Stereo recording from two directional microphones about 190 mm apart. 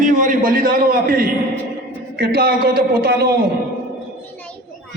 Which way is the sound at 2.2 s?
55° right (ahead or behind).